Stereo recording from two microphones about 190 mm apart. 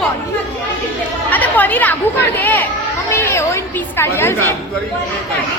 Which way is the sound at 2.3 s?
10° left (ahead or behind).